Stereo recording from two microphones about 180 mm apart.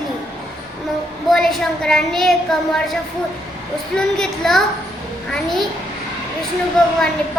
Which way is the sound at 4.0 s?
Centre (ahead or behind).